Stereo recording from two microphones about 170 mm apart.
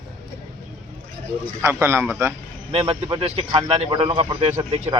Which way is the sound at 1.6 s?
15° right (ahead or behind).